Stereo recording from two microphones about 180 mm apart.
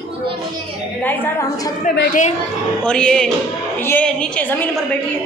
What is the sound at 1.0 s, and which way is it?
Speech, 10° left (ahead or behind).